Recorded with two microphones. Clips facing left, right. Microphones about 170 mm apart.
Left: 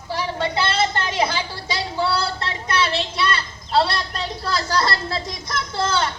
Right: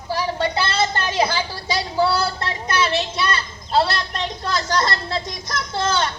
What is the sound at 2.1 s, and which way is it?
Speech, 30° left (ahead or behind).